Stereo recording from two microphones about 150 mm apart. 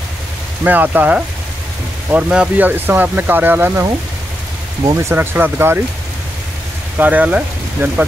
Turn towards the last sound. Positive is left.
turn(degrees=-10)  # may be behind; listen again after turning